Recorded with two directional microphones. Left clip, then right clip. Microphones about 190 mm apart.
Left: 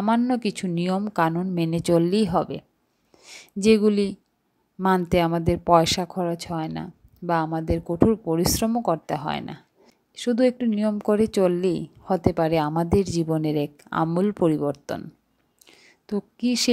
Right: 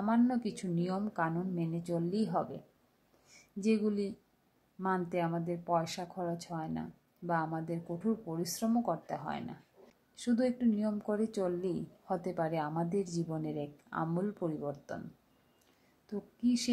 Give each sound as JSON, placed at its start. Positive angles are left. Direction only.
{"t": 0.0, "sound": "speech", "side_deg": 35}
{"t": 16.1, "sound": "speech", "side_deg": 40}